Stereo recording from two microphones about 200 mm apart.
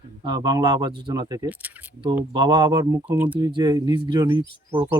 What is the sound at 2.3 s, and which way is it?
Speech, 20° right (ahead or behind).